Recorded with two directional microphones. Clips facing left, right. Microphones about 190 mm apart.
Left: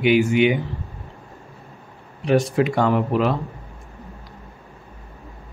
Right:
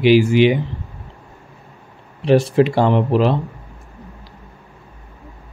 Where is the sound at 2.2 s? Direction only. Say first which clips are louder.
Right 5 dB; 30° right (ahead or behind).